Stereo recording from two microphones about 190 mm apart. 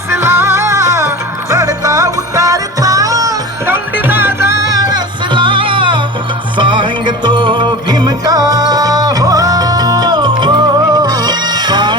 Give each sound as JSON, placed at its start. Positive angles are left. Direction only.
{"t": 0.1, "sound": "music", "side_deg": -10}